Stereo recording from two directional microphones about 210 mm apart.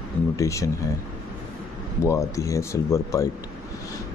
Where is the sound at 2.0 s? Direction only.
15° left (ahead or behind).